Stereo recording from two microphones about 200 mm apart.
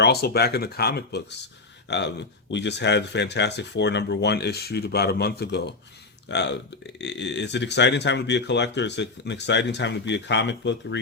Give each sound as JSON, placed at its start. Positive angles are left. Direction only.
{"t": 0.0, "sound": "speech", "side_deg": 55}